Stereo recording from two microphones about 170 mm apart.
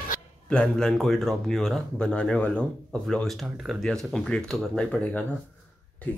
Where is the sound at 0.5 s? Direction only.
5° left (ahead or behind).